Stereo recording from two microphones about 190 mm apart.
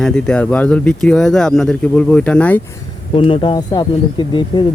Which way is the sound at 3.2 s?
25° left (ahead or behind).